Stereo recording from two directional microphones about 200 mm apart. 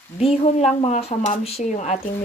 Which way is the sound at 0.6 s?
35° left (ahead or behind).